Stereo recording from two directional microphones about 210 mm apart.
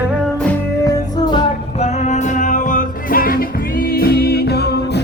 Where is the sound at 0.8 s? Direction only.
15° left (ahead or behind).